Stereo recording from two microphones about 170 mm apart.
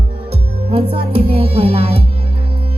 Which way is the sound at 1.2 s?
35° right (ahead or behind).